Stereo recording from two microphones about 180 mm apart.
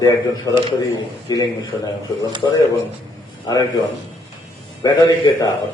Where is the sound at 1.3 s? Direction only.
20° left (ahead or behind).